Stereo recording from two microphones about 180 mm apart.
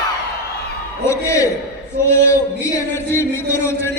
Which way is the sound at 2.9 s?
15° left (ahead or behind).